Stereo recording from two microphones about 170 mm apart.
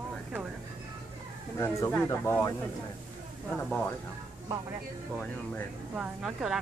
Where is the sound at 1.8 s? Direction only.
15° left (ahead or behind).